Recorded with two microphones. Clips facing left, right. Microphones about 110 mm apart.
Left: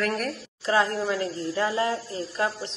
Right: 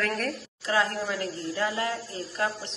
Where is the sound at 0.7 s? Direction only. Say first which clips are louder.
Left 3 dB; 25° left (ahead or behind).